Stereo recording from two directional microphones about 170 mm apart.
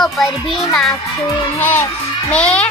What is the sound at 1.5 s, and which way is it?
Music, 10° left (ahead or behind).